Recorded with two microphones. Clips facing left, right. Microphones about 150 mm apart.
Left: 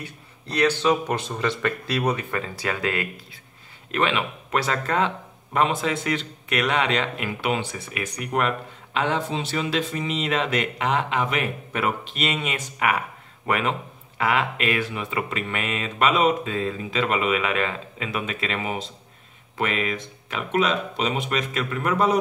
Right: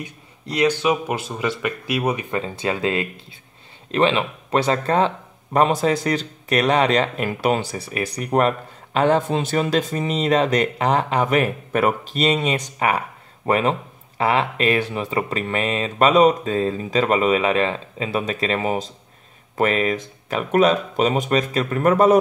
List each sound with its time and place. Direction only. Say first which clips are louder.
0.0 s speech: right 4 dB; 15° right (ahead or behind); by 22.1 s 45° right (ahead or behind)